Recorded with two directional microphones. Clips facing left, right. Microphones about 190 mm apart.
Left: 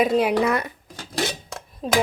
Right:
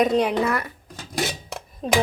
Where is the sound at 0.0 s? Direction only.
5° left (ahead or behind).